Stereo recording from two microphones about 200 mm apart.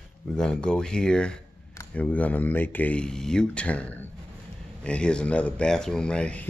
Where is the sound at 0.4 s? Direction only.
5° left (ahead or behind).